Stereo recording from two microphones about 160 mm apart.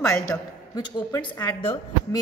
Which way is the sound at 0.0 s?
20° left (ahead or behind).